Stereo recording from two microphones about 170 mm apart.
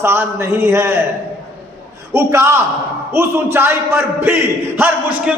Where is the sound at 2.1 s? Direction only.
15° right (ahead or behind).